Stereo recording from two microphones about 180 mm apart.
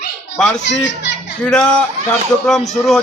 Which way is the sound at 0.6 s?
80° left.